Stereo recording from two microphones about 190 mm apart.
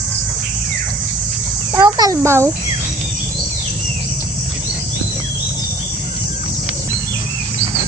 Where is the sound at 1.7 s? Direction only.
20° right (ahead or behind).